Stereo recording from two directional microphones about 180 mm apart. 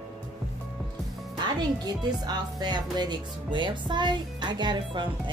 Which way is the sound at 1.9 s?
25° right (ahead or behind).